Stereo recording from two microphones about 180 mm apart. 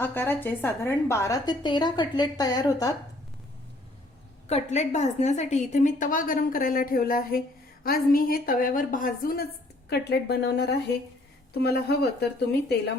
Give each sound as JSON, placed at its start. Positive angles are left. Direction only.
{"t": 0.0, "sound": "a woman's voice", "side_deg": 10}
{"t": 4.4, "sound": "a woman's voice", "side_deg": 40}